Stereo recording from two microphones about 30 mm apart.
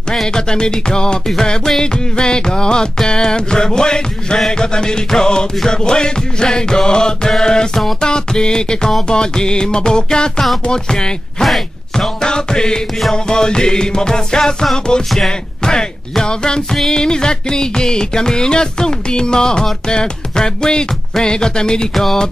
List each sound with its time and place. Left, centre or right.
0.3 s music: left
11.4 s a sound: centre
12.2 s music: left